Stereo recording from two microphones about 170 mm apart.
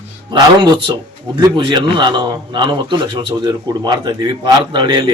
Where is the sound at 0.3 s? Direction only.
25° right (ahead or behind).